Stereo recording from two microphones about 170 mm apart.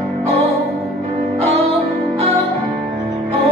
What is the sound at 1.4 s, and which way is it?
Music, 35° right (ahead or behind).